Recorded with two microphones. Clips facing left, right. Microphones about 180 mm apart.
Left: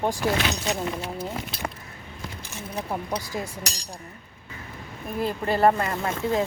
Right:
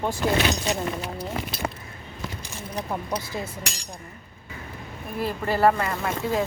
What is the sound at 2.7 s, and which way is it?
Speech, 10° left (ahead or behind).